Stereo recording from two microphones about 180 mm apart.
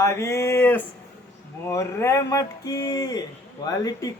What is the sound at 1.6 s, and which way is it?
Speech, 15° left (ahead or behind).